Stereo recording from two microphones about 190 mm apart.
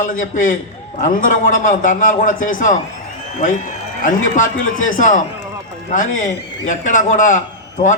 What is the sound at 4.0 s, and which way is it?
A man's voice, 40° left (ahead or behind).